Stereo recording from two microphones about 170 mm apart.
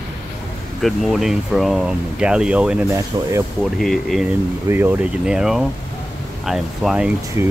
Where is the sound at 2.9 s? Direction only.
20° right (ahead or behind).